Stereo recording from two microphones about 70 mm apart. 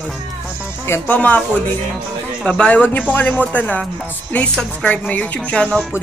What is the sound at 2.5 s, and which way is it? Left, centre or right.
Speech, centre.